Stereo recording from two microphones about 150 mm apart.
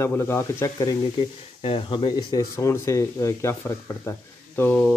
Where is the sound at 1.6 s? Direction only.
35° left (ahead or behind).